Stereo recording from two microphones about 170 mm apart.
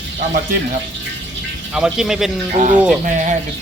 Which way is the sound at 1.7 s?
5° right (ahead or behind).